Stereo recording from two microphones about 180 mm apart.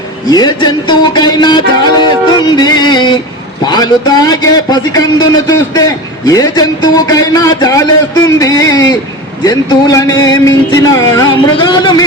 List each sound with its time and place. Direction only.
0.3 s a man's voice: 20° left (ahead or behind)